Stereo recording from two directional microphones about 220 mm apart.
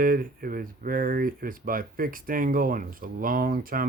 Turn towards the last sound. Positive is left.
turn(degrees=-40)  # may be behind; listen again after turning